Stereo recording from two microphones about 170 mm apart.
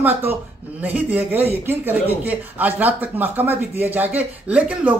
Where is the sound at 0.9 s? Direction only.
10° right (ahead or behind).